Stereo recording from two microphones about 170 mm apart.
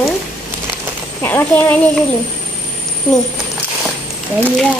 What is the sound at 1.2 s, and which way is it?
Child singing, 10° left (ahead or behind).